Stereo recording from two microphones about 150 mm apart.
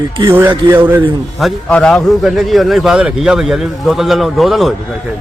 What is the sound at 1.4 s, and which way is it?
A man's voice, 5° left (ahead or behind).